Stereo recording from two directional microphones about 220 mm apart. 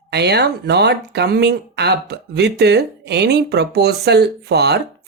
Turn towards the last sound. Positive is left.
turn(degrees=-50)  # may be behind; listen again after turning